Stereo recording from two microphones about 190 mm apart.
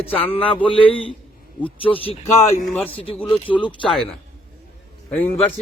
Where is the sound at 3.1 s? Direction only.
25° left (ahead or behind).